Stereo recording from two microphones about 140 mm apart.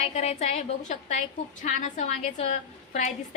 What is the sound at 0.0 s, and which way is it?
A woman's voice, 50° left (ahead or behind).